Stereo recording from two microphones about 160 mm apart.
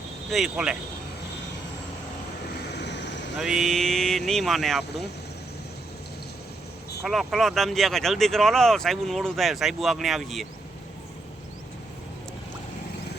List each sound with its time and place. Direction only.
0.3 s speech: centre (ahead or behind)
2.7 s vehicle: 90° left
3.3 s speech: centre (ahead or behind)
7.0 s speech: centre (ahead or behind)